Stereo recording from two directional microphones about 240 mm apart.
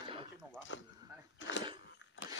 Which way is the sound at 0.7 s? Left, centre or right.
Left.